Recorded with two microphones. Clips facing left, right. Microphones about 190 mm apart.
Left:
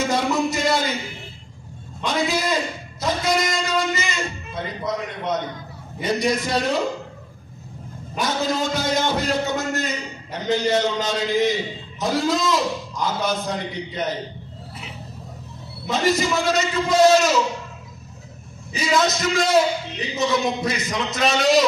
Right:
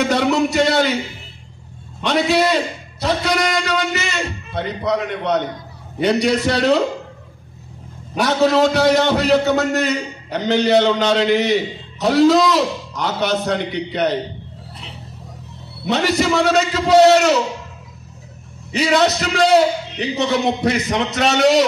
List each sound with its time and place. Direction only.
0.0 s a sound: 70° right (ahead or behind)
2.0 s a sound: 70° right (ahead or behind)
5.9 s a man's voice: 70° right (ahead or behind)
8.2 s a man's voice: 70° right (ahead or behind)
15.8 s a man's voice: 70° right (ahead or behind)
18.7 s a man's voice: 70° right (ahead or behind)